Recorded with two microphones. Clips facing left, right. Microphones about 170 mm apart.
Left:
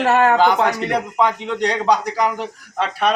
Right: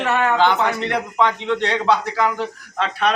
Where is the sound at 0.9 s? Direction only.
10° left (ahead or behind).